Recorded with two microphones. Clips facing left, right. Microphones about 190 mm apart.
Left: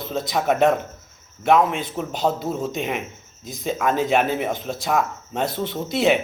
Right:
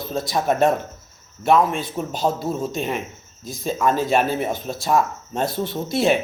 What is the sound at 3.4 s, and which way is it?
A man's voice, 20° left (ahead or behind).